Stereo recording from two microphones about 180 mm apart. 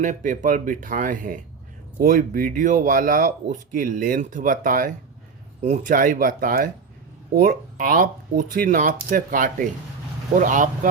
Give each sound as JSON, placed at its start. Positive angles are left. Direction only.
{"t": 0.0, "sound": "speech", "side_deg": -45}